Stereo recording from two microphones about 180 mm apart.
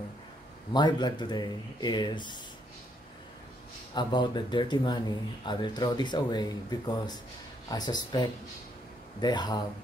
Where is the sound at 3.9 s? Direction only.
25° left (ahead or behind).